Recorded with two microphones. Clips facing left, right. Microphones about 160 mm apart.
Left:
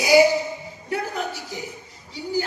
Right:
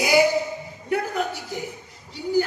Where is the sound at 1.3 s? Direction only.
55° right (ahead or behind).